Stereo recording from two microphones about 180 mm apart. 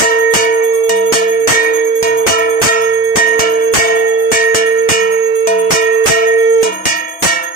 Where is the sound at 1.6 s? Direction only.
50° left (ahead or behind).